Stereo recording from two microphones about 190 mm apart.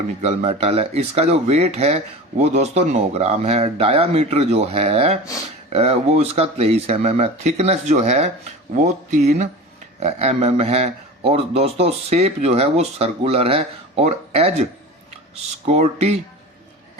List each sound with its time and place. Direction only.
0.2 s a man's voice: 35° right (ahead or behind)